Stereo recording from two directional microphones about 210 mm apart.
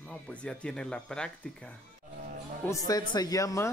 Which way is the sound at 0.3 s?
5° left (ahead or behind).